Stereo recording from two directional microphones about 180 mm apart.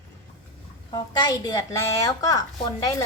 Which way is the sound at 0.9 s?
25° left (ahead or behind).